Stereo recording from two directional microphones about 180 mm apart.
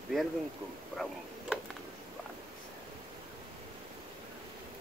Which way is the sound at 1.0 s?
Centre (ahead or behind).